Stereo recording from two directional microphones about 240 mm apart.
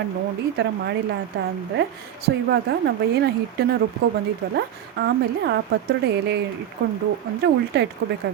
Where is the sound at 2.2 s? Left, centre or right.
Right.